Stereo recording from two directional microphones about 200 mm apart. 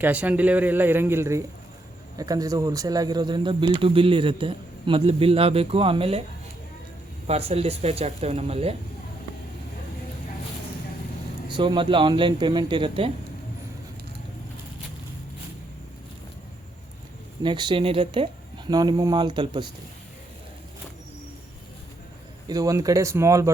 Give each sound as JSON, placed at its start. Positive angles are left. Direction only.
{"t": 0.0, "sound": "a man's voice", "side_deg": -5}
{"t": 7.3, "sound": "speech", "side_deg": -30}
{"t": 11.4, "sound": "speech", "side_deg": -20}
{"t": 17.4, "sound": "speech", "side_deg": -25}
{"t": 22.4, "sound": "a man's voice", "side_deg": -20}